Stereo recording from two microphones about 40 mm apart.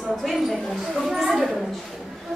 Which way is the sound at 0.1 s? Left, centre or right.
Centre.